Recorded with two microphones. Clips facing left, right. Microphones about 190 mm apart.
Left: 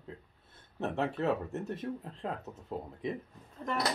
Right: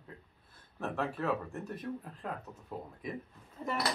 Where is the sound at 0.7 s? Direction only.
25° left (ahead or behind).